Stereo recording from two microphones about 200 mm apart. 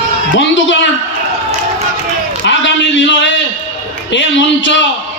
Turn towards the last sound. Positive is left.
turn(degrees=65)  # may be behind; listen again after turning